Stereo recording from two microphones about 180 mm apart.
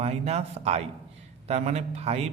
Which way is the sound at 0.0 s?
35° right (ahead or behind).